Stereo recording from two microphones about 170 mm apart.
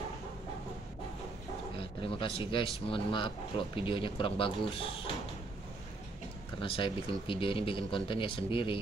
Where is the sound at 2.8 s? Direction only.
30° left (ahead or behind).